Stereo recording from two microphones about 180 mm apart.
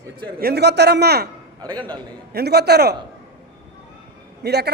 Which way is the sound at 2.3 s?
65° right (ahead or behind).